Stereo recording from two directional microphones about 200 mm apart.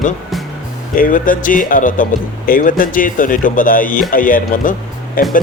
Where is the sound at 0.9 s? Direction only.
45° left (ahead or behind).